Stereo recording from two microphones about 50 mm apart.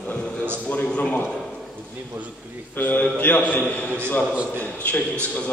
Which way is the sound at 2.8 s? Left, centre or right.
Left.